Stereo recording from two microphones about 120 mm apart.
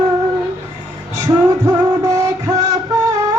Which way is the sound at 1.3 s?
25° right (ahead or behind).